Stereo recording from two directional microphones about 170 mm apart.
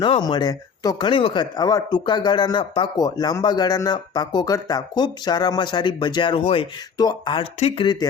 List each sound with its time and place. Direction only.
0.0 s speech: 25° left (ahead or behind)